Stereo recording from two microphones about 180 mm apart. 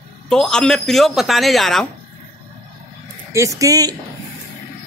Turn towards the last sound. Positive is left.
turn(degrees=-20)  # may be behind; listen again after turning